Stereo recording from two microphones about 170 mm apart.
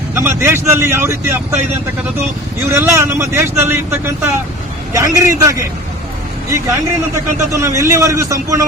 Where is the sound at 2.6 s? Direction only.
15° right (ahead or behind).